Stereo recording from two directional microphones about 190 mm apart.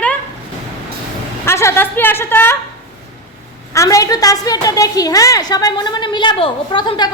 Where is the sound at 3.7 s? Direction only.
15° left (ahead or behind).